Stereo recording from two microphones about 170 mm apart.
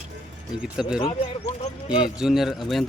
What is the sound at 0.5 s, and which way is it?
Speech, 5° right (ahead or behind).